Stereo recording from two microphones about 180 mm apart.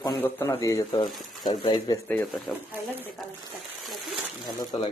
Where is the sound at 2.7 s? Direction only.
10° right (ahead or behind).